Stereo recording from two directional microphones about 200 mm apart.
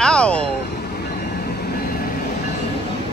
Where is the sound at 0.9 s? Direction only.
55° left (ahead or behind).